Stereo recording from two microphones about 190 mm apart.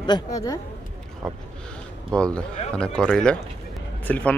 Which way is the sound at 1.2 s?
Centre (ahead or behind).